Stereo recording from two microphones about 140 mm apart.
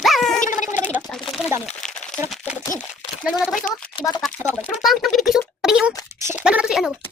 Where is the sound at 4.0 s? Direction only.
30° left (ahead or behind).